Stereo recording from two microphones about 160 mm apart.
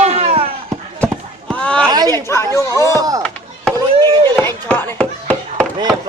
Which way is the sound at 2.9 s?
20° right (ahead or behind).